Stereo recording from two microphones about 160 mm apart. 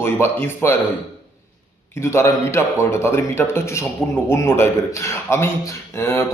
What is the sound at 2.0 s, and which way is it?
A man's voice, 15° left (ahead or behind).